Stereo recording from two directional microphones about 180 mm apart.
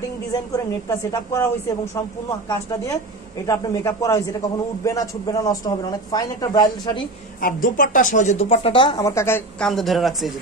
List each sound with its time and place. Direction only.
0.3 s a woman's voice: 20° left (ahead or behind)
7.4 s speech: 50° left (ahead or behind); by 9.7 s 15° left (ahead or behind)
9.7 s speech: centre (ahead or behind)